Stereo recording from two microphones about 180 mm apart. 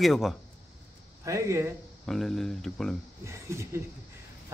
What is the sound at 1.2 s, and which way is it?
Speech, 15° right (ahead or behind).